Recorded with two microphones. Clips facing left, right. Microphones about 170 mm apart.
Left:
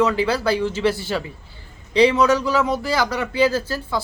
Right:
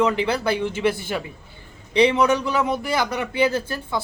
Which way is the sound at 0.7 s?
55° right (ahead or behind).